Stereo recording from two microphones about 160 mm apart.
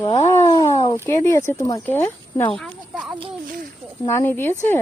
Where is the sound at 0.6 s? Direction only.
25° left (ahead or behind); by 2.8 s 5° left (ahead or behind).